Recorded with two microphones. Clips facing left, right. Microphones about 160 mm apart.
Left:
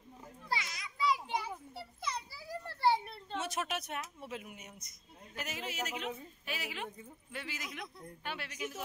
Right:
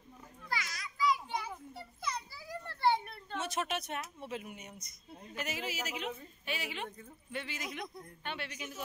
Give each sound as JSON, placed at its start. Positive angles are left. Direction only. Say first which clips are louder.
{"t": 0.5, "sound": "children playing", "louder": "left 1 dB", "side_deg": 25}
{"t": 2.9, "sound": "a sound", "louder": "even", "side_deg": 30}
{"t": 3.3, "sound": "speech", "louder": "right 1 dB", "side_deg": 5}